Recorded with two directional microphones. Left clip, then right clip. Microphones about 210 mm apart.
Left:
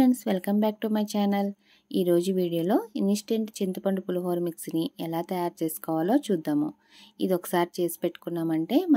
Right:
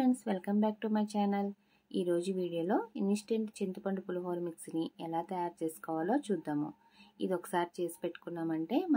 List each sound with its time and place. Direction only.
0.0 s a woman's voice: 45° left (ahead or behind)